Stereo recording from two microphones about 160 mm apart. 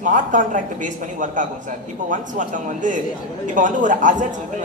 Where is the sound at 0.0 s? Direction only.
55° right (ahead or behind).